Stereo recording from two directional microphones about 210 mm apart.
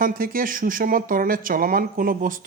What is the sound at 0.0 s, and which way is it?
Speech, 40° right (ahead or behind).